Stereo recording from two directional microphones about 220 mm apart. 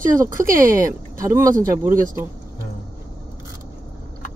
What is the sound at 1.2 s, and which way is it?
Speech, 15° right (ahead or behind).